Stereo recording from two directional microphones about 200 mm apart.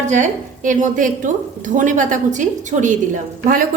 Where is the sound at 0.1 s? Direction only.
40° right (ahead or behind).